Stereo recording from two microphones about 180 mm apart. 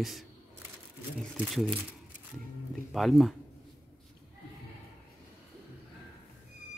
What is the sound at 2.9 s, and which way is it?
Speech, centre (ahead or behind).